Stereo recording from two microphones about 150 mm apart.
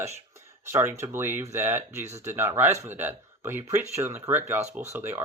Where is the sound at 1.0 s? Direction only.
15° right (ahead or behind).